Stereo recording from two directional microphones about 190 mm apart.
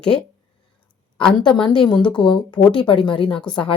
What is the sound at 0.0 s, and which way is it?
Speech, 5° left (ahead or behind).